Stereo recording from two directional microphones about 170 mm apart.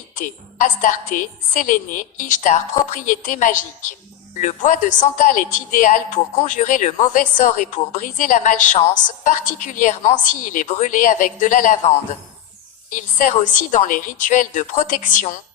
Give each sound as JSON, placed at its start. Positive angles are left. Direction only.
{"t": 0.2, "sound": "a woman's voice", "side_deg": 50}
{"t": 12.9, "sound": "a woman's voice", "side_deg": 50}